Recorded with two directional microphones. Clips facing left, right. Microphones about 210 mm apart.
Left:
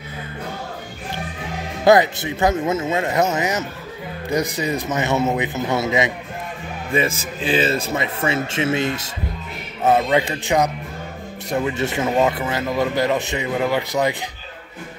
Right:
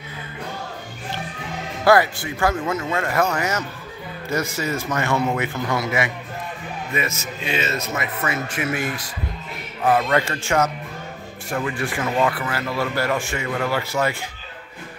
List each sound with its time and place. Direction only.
1.9 s speech: 20° left (ahead or behind)